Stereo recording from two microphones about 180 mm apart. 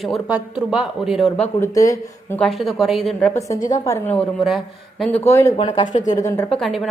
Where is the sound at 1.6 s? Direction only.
20° left (ahead or behind).